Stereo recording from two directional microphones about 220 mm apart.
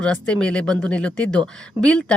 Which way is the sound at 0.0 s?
5° left (ahead or behind).